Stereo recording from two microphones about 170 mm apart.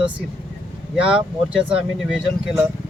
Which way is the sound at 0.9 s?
5° right (ahead or behind).